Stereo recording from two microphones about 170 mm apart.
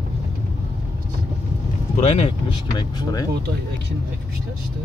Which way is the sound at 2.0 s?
35° left (ahead or behind).